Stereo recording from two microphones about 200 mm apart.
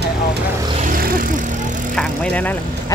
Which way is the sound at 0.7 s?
45° right (ahead or behind).